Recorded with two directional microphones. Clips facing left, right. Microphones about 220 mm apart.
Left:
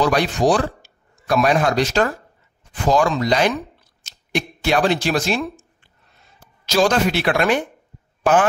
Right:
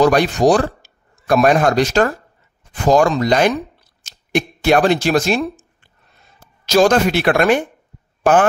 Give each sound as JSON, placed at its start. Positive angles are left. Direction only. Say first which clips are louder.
{"t": 0.0, "sound": "a man's voice", "louder": "right 5 dB", "side_deg": -45}